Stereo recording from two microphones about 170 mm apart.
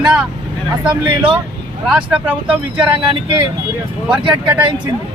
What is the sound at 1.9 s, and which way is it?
Speech, 5° right (ahead or behind).